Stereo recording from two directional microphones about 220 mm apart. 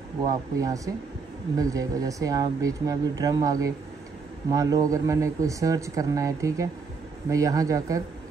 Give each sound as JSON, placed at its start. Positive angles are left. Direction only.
{"t": 0.3, "sound": "speech", "side_deg": -15}